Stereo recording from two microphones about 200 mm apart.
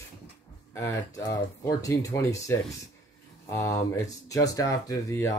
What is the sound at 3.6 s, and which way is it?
Speech, 15° left (ahead or behind).